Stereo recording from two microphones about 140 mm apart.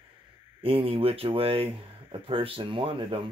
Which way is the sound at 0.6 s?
40° right (ahead or behind).